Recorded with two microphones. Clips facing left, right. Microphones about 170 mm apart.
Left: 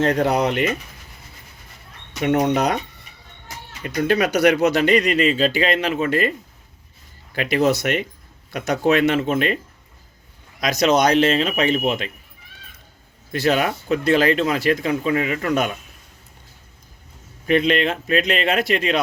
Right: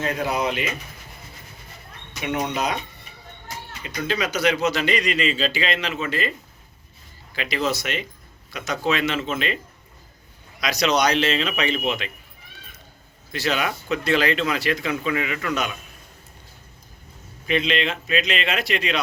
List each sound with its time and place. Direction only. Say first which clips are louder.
0.0 s speech: left 6 dB; 70° left (ahead or behind)
2.2 s speech: left 7 dB; 55° left (ahead or behind)
3.8 s speech: left 7 dB; 55° left (ahead or behind)
7.3 s speech: left 6 dB; 55° left (ahead or behind)
10.6 s speech: left 4 dB; 50° left (ahead or behind)
13.3 s speech: left 5 dB; 50° left (ahead or behind)
17.4 s speech: left 5 dB; 50° left (ahead or behind)